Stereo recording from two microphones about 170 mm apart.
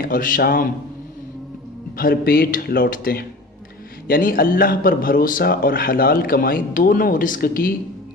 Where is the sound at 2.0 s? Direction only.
60° left (ahead or behind).